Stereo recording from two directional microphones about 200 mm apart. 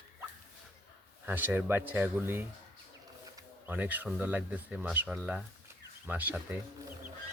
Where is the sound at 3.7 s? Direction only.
10° right (ahead or behind).